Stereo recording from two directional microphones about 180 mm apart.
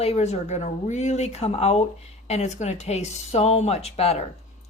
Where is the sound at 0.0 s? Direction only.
35° left (ahead or behind).